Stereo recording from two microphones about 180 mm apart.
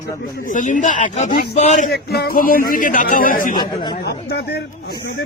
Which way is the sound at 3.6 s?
25° left (ahead or behind).